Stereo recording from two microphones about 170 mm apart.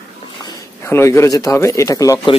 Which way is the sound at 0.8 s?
15° left (ahead or behind).